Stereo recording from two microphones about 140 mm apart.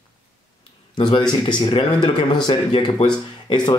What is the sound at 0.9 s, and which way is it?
Speech, 35° left (ahead or behind).